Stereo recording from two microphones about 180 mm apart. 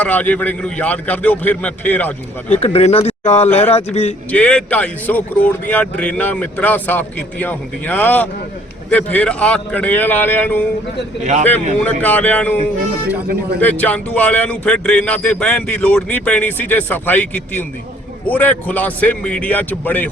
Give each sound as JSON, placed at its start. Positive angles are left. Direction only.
{"t": 0.0, "sound": "a man's voice", "side_deg": 10}
{"t": 2.5, "sound": "a man's voice", "side_deg": 35}
{"t": 4.3, "sound": "a man's voice", "side_deg": 5}
{"t": 11.2, "sound": "a man's voice", "side_deg": -40}
{"t": 11.8, "sound": "a man's voice", "side_deg": 10}
{"t": 13.6, "sound": "a man's voice", "side_deg": 10}